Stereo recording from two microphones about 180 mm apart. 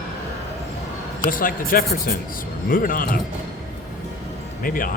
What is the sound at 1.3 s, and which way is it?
Speech, 50° left (ahead or behind).